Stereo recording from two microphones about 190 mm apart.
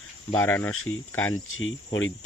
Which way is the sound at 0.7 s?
90° left.